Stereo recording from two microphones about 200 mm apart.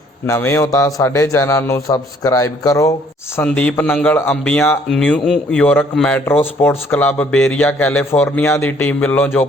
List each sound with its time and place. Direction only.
0.3 s speech: 10° left (ahead or behind)